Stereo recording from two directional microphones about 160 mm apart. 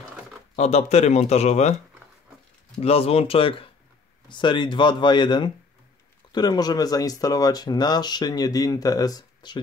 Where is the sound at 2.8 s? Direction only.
40° left (ahead or behind).